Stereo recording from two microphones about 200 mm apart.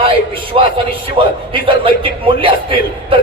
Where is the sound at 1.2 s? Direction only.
25° right (ahead or behind).